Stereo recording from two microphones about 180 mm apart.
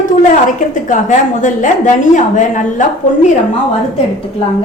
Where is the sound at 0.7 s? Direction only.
45° left (ahead or behind).